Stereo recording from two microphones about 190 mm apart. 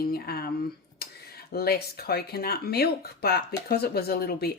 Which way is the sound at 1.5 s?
55° left (ahead or behind).